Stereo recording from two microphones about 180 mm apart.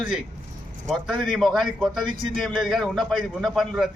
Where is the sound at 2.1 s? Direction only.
25° right (ahead or behind).